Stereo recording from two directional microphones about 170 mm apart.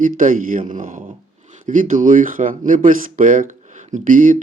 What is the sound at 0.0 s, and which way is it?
Speech, 50° right (ahead or behind).